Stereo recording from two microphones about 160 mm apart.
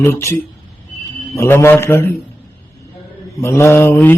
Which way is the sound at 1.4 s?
15° left (ahead or behind).